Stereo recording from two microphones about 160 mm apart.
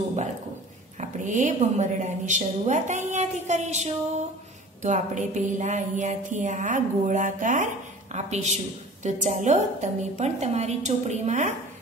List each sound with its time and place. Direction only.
0.9 s a woman's voice: 50° right (ahead or behind)